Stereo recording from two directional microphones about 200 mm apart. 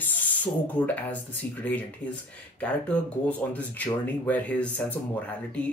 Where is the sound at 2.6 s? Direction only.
5° left (ahead or behind).